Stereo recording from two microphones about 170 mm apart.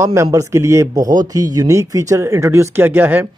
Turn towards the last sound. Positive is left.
turn(degrees=-10)  # may be behind; listen again after turning